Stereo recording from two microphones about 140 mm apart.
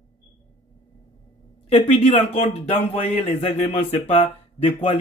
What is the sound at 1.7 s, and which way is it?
Speech, 50° left (ahead or behind).